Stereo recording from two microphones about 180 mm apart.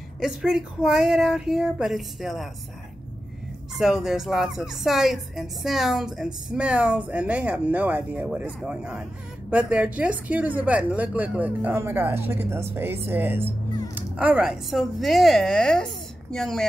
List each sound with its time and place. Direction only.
0.2 s a woman's voice: centre (ahead or behind)
3.7 s a woman's voice: centre (ahead or behind)